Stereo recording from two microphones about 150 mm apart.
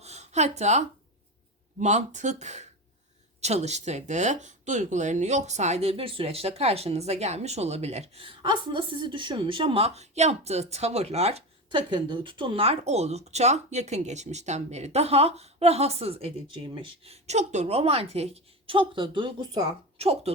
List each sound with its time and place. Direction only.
0.0 s a sound: 50° right (ahead or behind)
1.8 s speech: 50° right (ahead or behind); by 19.6 s 25° right (ahead or behind)
20.0 s speech: 40° right (ahead or behind)